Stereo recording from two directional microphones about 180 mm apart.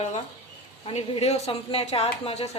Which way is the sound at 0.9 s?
30° left (ahead or behind).